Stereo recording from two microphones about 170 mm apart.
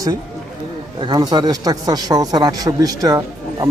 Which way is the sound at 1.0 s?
25° right (ahead or behind).